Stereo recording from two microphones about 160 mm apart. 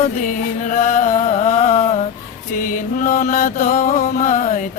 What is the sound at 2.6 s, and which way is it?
Music, 55° left (ahead or behind).